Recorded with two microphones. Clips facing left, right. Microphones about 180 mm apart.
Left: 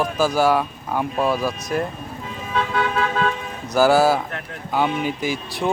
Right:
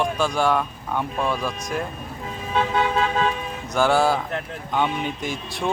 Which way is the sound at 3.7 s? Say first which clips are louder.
Left 4 dB; 5° left (ahead or behind).